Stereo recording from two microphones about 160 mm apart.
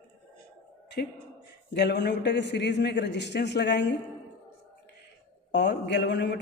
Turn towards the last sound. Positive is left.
turn(degrees=90)